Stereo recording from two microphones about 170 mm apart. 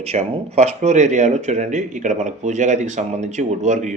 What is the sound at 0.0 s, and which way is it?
Speech, 40° right (ahead or behind).